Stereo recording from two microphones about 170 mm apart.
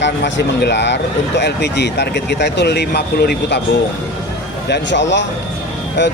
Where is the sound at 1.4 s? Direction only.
80° left.